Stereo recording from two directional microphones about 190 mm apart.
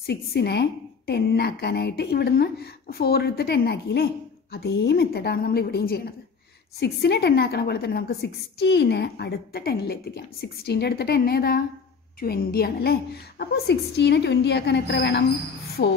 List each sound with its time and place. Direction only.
0.0 s a woman's voice: 55° left (ahead or behind)